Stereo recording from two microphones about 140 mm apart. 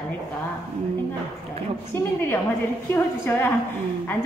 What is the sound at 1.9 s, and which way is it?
A woman's voice, 20° left (ahead or behind).